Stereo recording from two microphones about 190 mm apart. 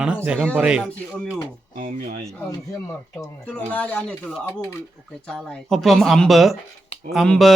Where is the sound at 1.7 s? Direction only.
45° right (ahead or behind).